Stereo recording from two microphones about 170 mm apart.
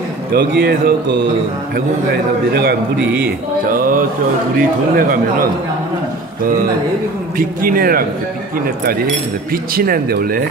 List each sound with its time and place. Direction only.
0.3 s speech: 65° right (ahead or behind)
2.5 s a man's voice: 70° right (ahead or behind)
3.7 s speech: 55° right (ahead or behind)
7.3 s speech: 55° right (ahead or behind)